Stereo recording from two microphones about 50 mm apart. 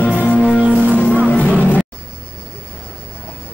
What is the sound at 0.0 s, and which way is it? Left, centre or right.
Music, left.